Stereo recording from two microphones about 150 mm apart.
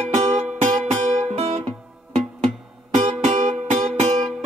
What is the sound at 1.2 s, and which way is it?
Music, 40° right (ahead or behind).